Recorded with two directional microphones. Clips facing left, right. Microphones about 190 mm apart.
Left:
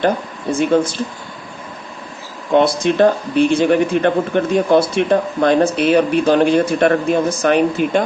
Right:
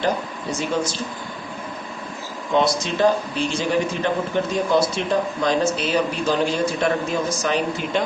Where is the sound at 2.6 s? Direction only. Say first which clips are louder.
Left 6 dB; 60° left (ahead or behind).